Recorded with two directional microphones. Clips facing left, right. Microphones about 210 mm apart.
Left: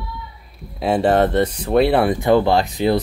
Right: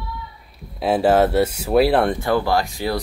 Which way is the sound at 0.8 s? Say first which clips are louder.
Even; 5° right (ahead or behind).